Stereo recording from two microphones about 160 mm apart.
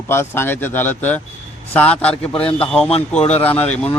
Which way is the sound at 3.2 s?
40° left (ahead or behind).